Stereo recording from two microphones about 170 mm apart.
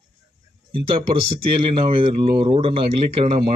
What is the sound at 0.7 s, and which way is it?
Speech, 30° right (ahead or behind).